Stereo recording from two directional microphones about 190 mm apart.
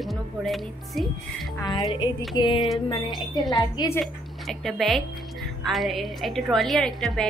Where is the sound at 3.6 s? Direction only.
15° left (ahead or behind).